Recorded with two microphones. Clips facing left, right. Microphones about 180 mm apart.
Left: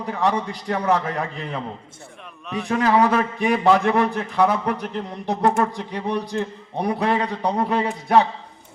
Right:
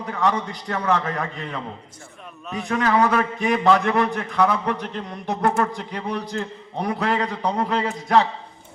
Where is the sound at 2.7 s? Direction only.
30° left (ahead or behind).